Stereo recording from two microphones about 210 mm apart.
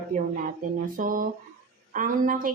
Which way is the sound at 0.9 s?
40° right (ahead or behind).